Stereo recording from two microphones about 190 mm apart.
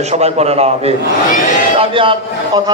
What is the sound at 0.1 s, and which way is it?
A man's voice, 35° right (ahead or behind).